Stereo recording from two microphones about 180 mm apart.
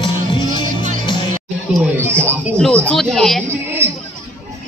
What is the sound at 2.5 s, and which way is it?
Speech, 5° left (ahead or behind).